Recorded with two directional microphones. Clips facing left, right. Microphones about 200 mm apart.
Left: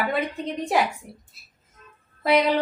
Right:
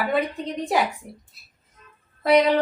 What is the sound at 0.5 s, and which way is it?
Speech, centre (ahead or behind).